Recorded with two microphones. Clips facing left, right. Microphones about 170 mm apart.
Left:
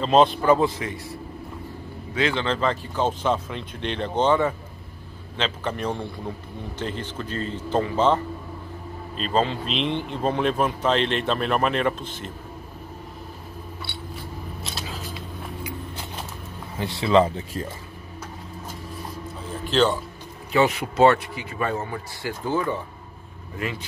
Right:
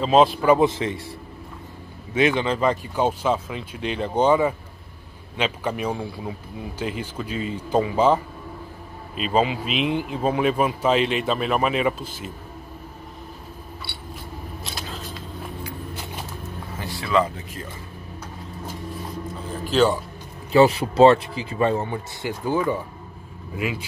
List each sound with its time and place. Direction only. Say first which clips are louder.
0.0 s speech: right 1 dB; 5° right (ahead or behind)
0.6 s speech: right 3 dB; 25° right (ahead or behind)
2.1 s speech: right 4 dB; 15° right (ahead or behind)
14.6 s a sound: even; centre (ahead or behind)
16.7 s speech: left 3 dB; 25° left (ahead or behind)
19.6 s speech: right 2 dB; 5° right (ahead or behind)
20.5 s speech: right 5 dB; 30° right (ahead or behind)
22.4 s speech: right 2 dB; 15° right (ahead or behind)